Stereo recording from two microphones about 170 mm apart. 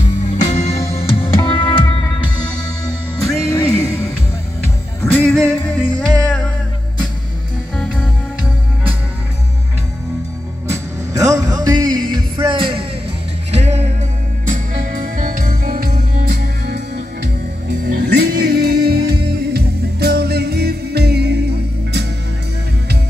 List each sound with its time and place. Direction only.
0.0 s music: 45° left (ahead or behind); by 3.6 s 20° left (ahead or behind)
5.1 s music: 10° left (ahead or behind)
7.7 s music: 5° left (ahead or behind)
10.7 s music: 20° right (ahead or behind); by 13.8 s 40° right (ahead or behind)
14.5 s music: 50° right (ahead or behind)
17.8 s music: 65° right (ahead or behind)